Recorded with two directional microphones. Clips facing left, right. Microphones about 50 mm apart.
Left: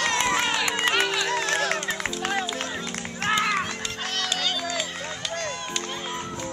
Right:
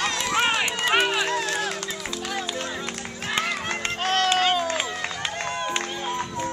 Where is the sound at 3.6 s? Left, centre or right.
Right.